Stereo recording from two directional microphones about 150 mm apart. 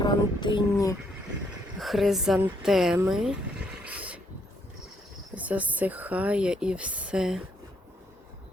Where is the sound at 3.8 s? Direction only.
10° right (ahead or behind).